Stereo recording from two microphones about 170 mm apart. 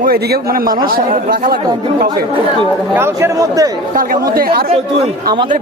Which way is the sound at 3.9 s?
55° right (ahead or behind).